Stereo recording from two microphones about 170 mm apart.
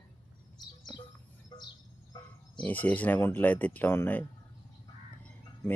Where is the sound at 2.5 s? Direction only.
10° left (ahead or behind).